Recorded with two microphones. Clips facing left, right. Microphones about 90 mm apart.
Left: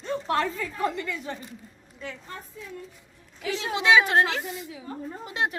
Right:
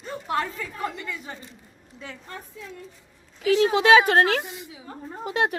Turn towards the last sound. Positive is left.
turn(degrees=-65)  # may be behind; listen again after turning